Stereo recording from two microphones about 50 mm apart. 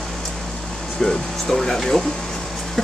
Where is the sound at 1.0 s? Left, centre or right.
Centre.